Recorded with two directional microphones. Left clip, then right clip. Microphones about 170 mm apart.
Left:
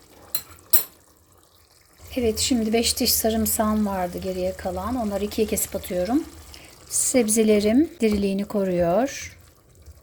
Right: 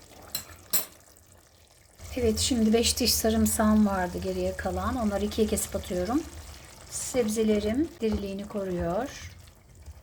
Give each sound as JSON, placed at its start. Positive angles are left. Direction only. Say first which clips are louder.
{"t": 2.1, "sound": "speech", "louder": "left 4 dB", "side_deg": 20}
{"t": 6.9, "sound": "a woman's voice", "louder": "left 7 dB", "side_deg": 40}